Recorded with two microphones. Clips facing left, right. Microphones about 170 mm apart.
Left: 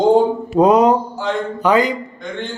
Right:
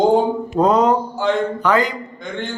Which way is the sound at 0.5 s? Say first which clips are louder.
Left 3 dB; 15° left (ahead or behind).